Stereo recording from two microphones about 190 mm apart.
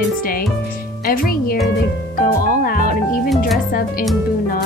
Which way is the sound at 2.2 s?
45° left (ahead or behind).